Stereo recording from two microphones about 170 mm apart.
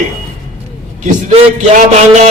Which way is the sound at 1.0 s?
45° right (ahead or behind).